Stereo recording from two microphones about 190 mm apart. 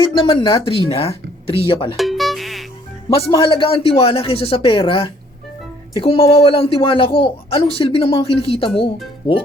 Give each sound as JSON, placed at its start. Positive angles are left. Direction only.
{"t": 0.0, "sound": "a woman's voice", "side_deg": 25}
{"t": 2.0, "sound": "music", "side_deg": 0}
{"t": 3.1, "sound": "a woman's voice", "side_deg": 30}